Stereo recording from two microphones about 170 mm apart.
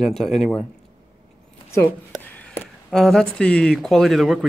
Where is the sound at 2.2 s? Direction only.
10° left (ahead or behind).